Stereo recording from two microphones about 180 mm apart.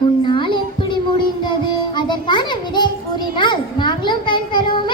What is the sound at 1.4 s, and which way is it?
Music, 25° left (ahead or behind).